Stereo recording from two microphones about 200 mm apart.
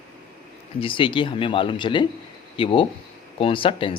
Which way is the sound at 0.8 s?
25° left (ahead or behind).